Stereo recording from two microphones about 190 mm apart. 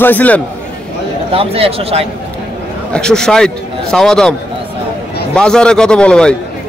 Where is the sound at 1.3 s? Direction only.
30° right (ahead or behind).